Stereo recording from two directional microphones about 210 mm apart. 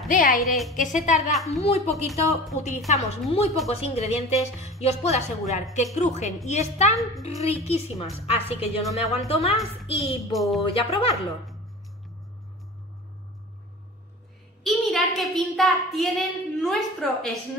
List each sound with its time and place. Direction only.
0.1 s a woman's voice: 40° left (ahead or behind)
0.5 s speech: centre (ahead or behind)
0.7 s a woman's voice: 35° left (ahead or behind)
1.3 s speech: centre (ahead or behind)
2.5 s a woman's voice: 35° left (ahead or behind)
10.3 s speech: centre (ahead or behind)
10.7 s a woman's voice: 25° left (ahead or behind)
14.6 s a woman's voice: centre (ahead or behind)